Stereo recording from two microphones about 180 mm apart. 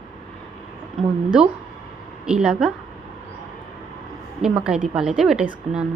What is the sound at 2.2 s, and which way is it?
Speech, 5° right (ahead or behind).